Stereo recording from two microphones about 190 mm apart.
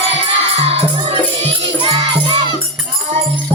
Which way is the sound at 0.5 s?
30° right (ahead or behind).